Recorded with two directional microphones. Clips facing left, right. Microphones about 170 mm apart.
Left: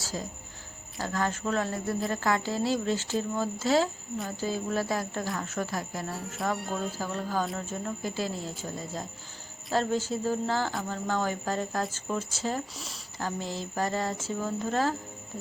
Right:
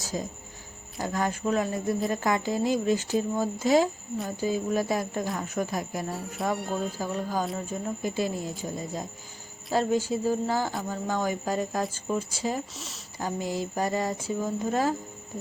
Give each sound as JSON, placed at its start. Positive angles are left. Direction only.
{"t": 0.0, "sound": "speech", "side_deg": -20}
{"t": 6.5, "sound": "speech", "side_deg": 0}
{"t": 7.0, "sound": "speech", "side_deg": -15}
{"t": 8.0, "sound": "speech", "side_deg": -15}
{"t": 12.7, "sound": "speech", "side_deg": 0}
{"t": 13.1, "sound": "speech", "side_deg": -15}